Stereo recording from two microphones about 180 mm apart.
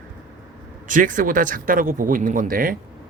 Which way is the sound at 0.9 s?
45° right (ahead or behind).